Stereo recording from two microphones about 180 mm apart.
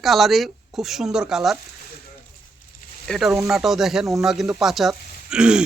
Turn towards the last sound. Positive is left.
turn(degrees=-5)  # may be behind; listen again after turning